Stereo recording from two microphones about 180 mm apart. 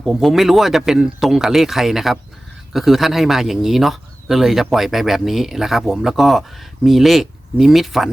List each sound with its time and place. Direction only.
0.0 s speech: centre (ahead or behind)